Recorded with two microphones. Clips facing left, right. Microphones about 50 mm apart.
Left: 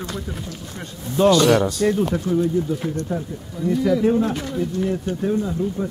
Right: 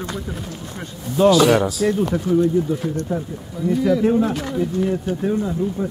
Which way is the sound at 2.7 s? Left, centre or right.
Centre.